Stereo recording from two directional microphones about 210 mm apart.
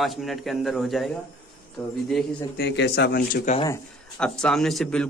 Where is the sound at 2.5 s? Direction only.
55° left (ahead or behind).